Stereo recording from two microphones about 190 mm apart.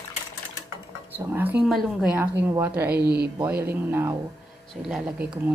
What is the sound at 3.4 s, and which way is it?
Speech, 10° right (ahead or behind).